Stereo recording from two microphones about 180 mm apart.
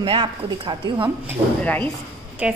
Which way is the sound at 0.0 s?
25° right (ahead or behind).